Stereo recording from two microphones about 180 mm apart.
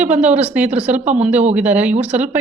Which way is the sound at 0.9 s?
40° right (ahead or behind).